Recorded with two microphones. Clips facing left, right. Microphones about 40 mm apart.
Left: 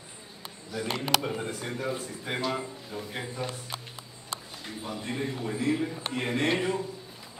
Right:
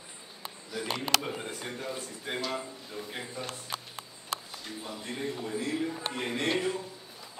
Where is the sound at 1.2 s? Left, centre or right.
Centre.